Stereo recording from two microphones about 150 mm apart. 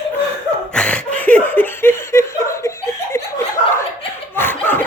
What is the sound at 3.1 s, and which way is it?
Chuckle, 20° left (ahead or behind).